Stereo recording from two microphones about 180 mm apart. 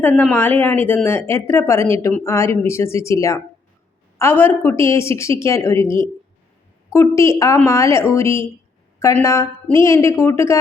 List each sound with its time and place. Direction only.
0.2 s speech: 10° left (ahead or behind)